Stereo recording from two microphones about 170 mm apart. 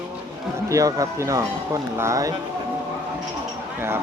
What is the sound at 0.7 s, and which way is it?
Speech, 20° right (ahead or behind).